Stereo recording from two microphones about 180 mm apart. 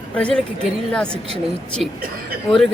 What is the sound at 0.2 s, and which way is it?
A woman's voice, 5° left (ahead or behind).